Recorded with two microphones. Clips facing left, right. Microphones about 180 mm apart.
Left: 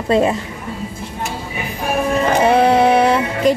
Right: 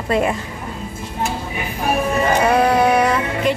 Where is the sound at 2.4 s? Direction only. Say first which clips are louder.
Left 4 dB; 25° left (ahead or behind).